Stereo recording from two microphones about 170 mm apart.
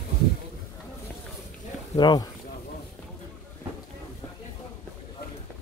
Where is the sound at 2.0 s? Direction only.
25° left (ahead or behind).